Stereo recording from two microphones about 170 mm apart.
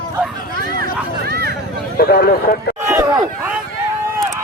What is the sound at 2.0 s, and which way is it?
Speech, 65° left (ahead or behind).